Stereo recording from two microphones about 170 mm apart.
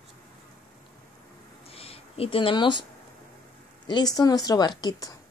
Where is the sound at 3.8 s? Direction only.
25° left (ahead or behind).